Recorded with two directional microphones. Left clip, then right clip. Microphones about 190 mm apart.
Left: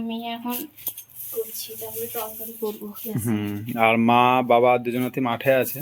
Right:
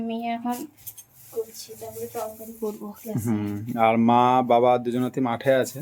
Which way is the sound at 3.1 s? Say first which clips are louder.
Left 1 dB; 5° left (ahead or behind).